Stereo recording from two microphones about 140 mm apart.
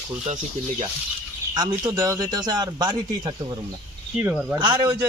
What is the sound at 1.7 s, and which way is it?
A man's voice, 25° right (ahead or behind).